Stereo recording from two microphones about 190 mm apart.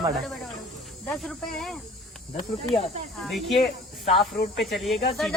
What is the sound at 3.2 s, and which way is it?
Speech, centre (ahead or behind).